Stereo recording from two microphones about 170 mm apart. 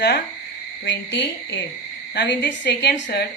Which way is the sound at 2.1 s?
80° left.